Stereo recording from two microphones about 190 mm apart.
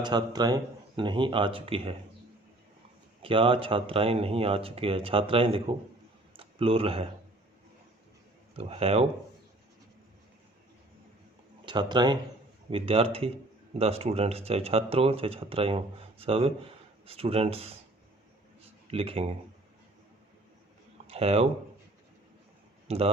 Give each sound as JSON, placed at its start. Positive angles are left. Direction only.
{"t": 0.0, "sound": "speech", "side_deg": -25}
{"t": 3.2, "sound": "speech", "side_deg": -30}
{"t": 8.5, "sound": "speech", "side_deg": -30}
{"t": 11.6, "sound": "speech", "side_deg": -25}
{"t": 18.6, "sound": "a sound", "side_deg": -30}
{"t": 21.1, "sound": "speech", "side_deg": -30}
{"t": 22.9, "sound": "speech", "side_deg": -30}